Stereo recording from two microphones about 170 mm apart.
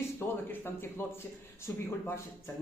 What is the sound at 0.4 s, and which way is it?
Speech, 15° left (ahead or behind).